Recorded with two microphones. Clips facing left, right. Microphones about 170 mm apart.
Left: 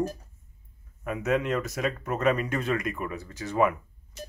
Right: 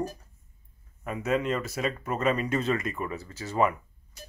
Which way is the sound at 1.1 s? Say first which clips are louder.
Left 1 dB; centre (ahead or behind).